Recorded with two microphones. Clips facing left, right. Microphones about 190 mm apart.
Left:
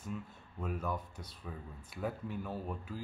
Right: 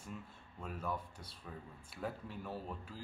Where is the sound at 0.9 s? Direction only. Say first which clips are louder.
Left 2 dB; 30° right (ahead or behind).